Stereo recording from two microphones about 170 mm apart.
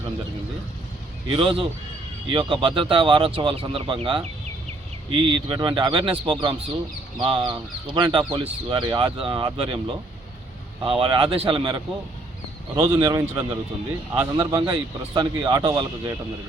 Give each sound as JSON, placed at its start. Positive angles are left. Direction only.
{"t": 1.3, "sound": "speech", "side_deg": -30}
{"t": 12.7, "sound": "speech", "side_deg": -15}